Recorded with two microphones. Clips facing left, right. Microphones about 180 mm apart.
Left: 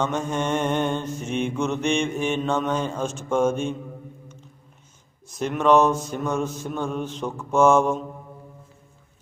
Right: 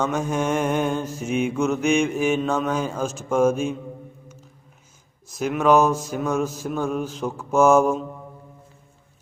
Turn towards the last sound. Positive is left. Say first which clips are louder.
# right 1 dB
turn(degrees=-5)  # may be behind; listen again after turning